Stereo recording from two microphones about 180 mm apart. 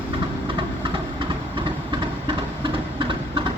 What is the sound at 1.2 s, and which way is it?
Vehicle, 25° right (ahead or behind).